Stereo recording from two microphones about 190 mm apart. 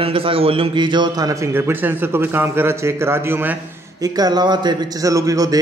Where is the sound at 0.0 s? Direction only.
30° right (ahead or behind).